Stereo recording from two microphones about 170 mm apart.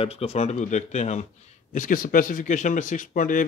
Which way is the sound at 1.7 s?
55° left (ahead or behind).